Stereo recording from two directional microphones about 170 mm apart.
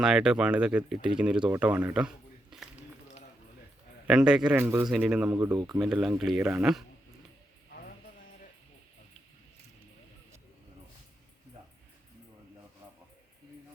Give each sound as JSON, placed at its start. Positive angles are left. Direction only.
{"t": 0.0, "sound": "speech", "side_deg": -5}
{"t": 4.0, "sound": "speech", "side_deg": -5}
{"t": 4.6, "sound": "speech", "side_deg": -20}
{"t": 4.9, "sound": "speech", "side_deg": -5}
{"t": 5.3, "sound": "speech", "side_deg": -20}
{"t": 5.8, "sound": "speech", "side_deg": -5}